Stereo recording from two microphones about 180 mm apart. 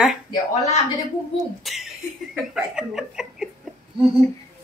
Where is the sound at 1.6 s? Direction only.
Centre (ahead or behind).